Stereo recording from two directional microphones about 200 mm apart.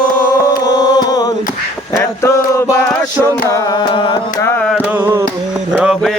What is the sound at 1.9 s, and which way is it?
Chant, 15° left (ahead or behind).